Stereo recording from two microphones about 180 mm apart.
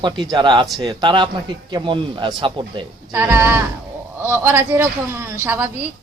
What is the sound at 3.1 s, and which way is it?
A man's voice, 15° right (ahead or behind).